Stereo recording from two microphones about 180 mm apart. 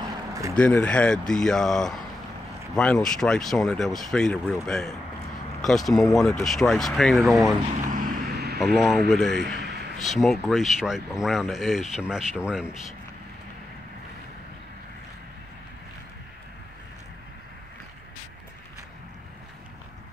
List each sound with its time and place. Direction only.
0.3 s a sound: 15° right (ahead or behind)
0.6 s speech: 5° left (ahead or behind)
7.8 s vehicle: 50° right (ahead or behind)
8.7 s speech: centre (ahead or behind)